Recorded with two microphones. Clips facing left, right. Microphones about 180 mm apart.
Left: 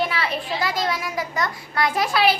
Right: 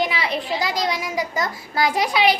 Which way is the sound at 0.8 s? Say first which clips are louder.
Right 1 dB; 20° right (ahead or behind).